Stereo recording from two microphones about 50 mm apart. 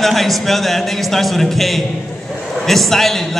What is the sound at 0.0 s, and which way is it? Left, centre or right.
Speech, centre.